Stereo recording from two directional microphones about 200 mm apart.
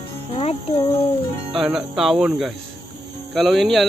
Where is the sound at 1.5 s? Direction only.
Centre (ahead or behind).